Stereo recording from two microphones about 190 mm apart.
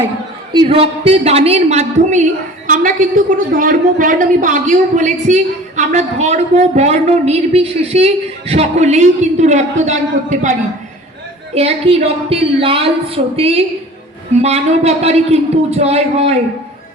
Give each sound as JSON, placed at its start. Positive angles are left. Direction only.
{"t": 0.5, "sound": "a woman's voice", "side_deg": -25}
{"t": 11.5, "sound": "a woman's voice", "side_deg": -35}